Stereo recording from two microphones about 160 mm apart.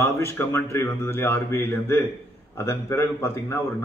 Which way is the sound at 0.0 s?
15° left (ahead or behind).